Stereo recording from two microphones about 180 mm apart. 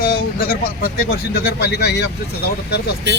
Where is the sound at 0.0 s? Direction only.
50° left (ahead or behind).